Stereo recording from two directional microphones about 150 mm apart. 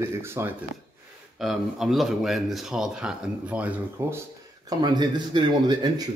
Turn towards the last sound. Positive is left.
turn(degrees=-30)  # may be behind; listen again after turning